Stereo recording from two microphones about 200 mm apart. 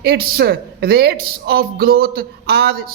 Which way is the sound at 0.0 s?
50° right (ahead or behind).